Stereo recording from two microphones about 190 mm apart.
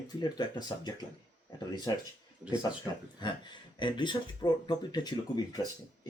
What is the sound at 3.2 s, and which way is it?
Speech, 25° left (ahead or behind).